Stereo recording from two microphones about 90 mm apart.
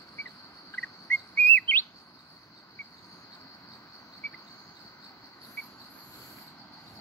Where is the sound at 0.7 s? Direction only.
25° left (ahead or behind).